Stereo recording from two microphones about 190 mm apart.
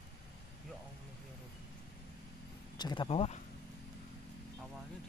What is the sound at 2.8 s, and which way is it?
Speech, 25° left (ahead or behind).